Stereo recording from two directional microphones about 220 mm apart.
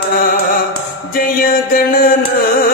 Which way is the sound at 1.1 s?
40° left (ahead or behind).